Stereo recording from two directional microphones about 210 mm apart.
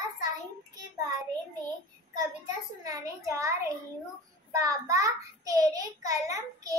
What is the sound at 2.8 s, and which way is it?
A child's voice, 15° right (ahead or behind).